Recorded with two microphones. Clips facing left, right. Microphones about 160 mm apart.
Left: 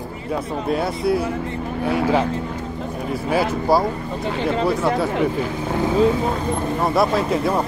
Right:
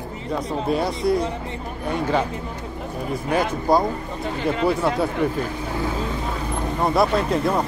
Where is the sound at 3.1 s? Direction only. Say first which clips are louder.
Left 2 dB; 5° left (ahead or behind).